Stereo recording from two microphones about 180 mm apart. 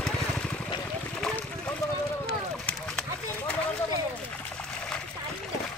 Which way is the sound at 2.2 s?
5° left (ahead or behind).